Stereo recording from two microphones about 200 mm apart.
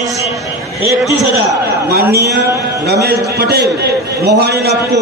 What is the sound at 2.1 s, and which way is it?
A man's voice, 55° right (ahead or behind).